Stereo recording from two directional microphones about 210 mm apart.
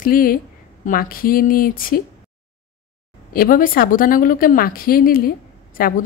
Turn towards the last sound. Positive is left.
turn(degrees=45)  # may be behind; listen again after turning